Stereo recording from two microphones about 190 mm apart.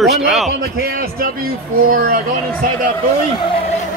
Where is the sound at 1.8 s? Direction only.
50° right (ahead or behind).